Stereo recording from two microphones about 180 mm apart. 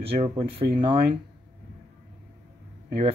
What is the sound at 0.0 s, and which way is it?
Speech, 30° right (ahead or behind).